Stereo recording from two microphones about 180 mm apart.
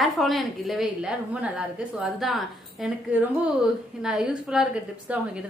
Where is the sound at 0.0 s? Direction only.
Centre (ahead or behind).